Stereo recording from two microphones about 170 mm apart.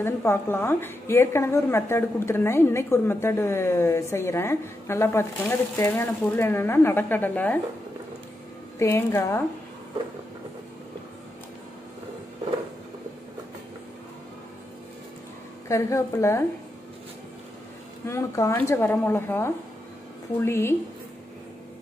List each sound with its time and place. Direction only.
0.0 s a woman's voice: 15° left (ahead or behind)
8.7 s a woman's voice: 15° left (ahead or behind)
15.7 s a woman's voice: 15° left (ahead or behind)
18.0 s a woman's voice: 15° left (ahead or behind)